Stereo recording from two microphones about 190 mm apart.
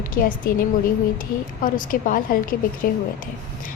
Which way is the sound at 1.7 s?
45° left (ahead or behind).